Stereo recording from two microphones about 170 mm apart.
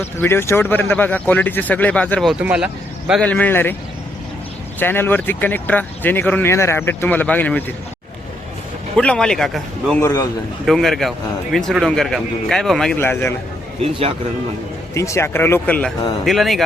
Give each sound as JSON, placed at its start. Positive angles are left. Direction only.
{"t": 0.0, "sound": "speech", "side_deg": 15}
{"t": 2.4, "sound": "speech", "side_deg": -5}
{"t": 3.1, "sound": "speech", "side_deg": 5}
{"t": 4.8, "sound": "speech", "side_deg": 10}
{"t": 9.0, "sound": "speech", "side_deg": 5}
{"t": 9.9, "sound": "speech", "side_deg": 15}
{"t": 10.7, "sound": "speech", "side_deg": 0}
{"t": 13.9, "sound": "a man's voice", "side_deg": -30}
{"t": 14.9, "sound": "speech", "side_deg": 15}